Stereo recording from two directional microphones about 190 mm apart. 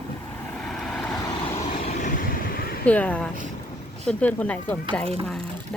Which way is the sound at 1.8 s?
40° left (ahead or behind).